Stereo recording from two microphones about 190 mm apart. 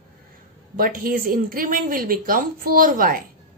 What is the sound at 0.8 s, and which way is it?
A woman's voice, 50° right (ahead or behind).